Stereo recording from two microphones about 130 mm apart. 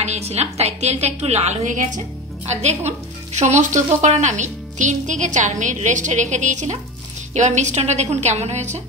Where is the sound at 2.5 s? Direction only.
60° right (ahead or behind).